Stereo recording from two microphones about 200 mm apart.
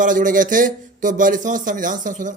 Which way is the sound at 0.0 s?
40° right (ahead or behind).